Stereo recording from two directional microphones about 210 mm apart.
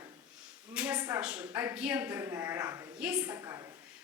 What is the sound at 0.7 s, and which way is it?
A woman's voice, 5° right (ahead or behind).